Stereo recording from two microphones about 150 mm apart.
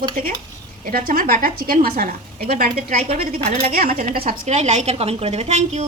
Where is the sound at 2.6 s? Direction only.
75° right (ahead or behind).